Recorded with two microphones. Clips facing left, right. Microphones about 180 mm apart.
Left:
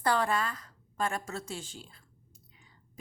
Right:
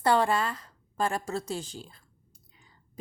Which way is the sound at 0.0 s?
25° right (ahead or behind).